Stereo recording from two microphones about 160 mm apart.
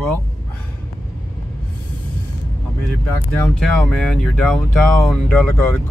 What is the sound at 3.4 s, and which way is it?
Speech, 5° left (ahead or behind).